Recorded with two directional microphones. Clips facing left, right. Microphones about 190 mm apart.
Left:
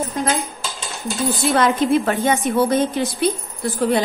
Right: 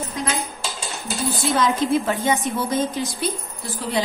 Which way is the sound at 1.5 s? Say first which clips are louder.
Left 3 dB; 60° left (ahead or behind).